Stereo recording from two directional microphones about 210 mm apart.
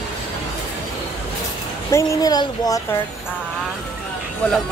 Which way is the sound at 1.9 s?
15° left (ahead or behind).